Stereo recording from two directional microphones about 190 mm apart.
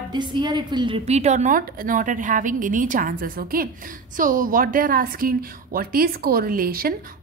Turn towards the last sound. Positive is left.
turn(degrees=-50)  # may be behind; listen again after turning